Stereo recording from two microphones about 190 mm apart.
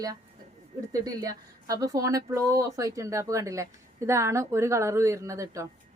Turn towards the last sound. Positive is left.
turn(degrees=-15)  # may be behind; listen again after turning